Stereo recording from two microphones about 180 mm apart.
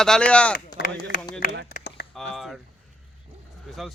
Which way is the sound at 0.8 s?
75° left (ahead or behind).